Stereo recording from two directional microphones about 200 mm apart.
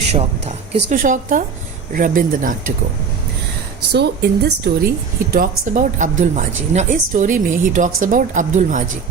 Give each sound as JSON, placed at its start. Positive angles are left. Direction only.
{"t": 0.1, "sound": "a woman's voice", "side_deg": -35}
{"t": 3.9, "sound": "speech", "side_deg": -55}
{"t": 5.3, "sound": "a woman's voice", "side_deg": -40}